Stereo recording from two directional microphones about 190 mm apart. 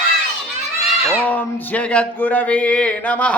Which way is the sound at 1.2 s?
10° left (ahead or behind).